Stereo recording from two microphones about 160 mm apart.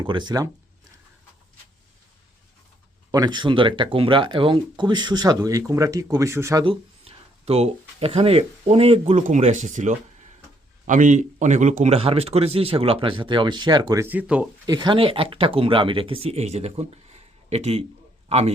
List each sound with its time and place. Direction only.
0.0 s speech: 30° right (ahead or behind)
3.1 s speech: 25° right (ahead or behind)
6.7 s speech: 35° right (ahead or behind); by 14.4 s 10° right (ahead or behind)
14.7 s a man's voice: 25° right (ahead or behind)